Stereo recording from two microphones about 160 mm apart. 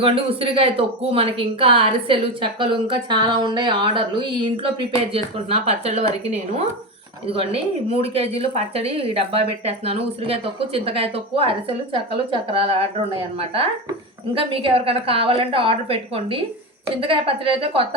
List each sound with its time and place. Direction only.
0.0 s speech: 35° right (ahead or behind)